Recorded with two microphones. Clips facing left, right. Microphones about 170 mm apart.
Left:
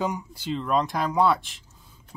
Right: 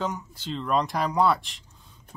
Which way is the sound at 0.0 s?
10° left (ahead or behind).